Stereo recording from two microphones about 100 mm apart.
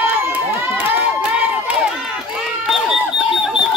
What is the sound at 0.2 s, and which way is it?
Crowd, 15° right (ahead or behind).